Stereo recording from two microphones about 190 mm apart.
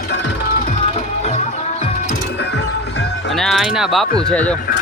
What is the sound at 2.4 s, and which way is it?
Music, 65° left (ahead or behind).